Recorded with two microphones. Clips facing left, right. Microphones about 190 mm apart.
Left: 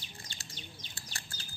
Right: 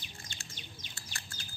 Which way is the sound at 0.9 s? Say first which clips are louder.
Even; 35° left (ahead or behind).